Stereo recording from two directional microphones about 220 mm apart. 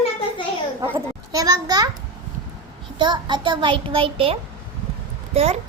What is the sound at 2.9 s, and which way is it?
A woman's voice, 20° right (ahead or behind).